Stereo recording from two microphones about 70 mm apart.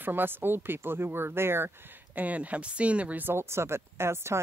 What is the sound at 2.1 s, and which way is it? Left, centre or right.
Speech, right.